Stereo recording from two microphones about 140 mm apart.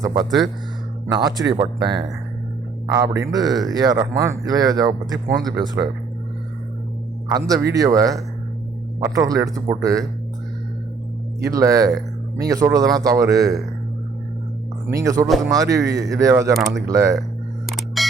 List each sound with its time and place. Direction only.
0.0 s speech: 30° right (ahead or behind)
0.3 s speech: centre (ahead or behind)
1.1 s speech: 30° right (ahead or behind)
2.9 s speech: 20° right (ahead or behind)
7.3 s speech: 25° right (ahead or behind)
11.3 s speech: 25° right (ahead or behind)
14.8 s speech: 25° right (ahead or behind)
17.7 s camera: centre (ahead or behind)